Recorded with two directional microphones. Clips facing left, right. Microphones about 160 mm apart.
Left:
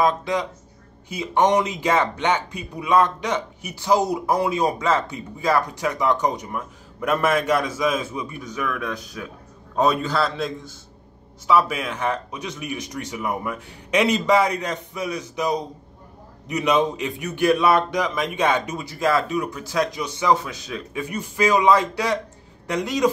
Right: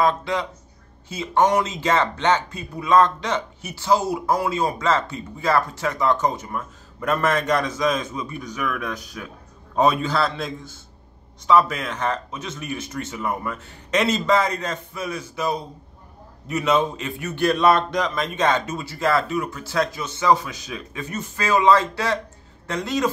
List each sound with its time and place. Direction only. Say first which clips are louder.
0.0 s a man's voice: even; 15° left (ahead or behind)
9.8 s a man's voice: right 1 dB; centre (ahead or behind); by 23.0 s 15° left (ahead or behind)